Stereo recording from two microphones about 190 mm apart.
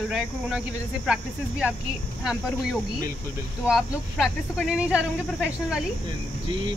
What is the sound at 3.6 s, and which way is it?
Speech, centre (ahead or behind).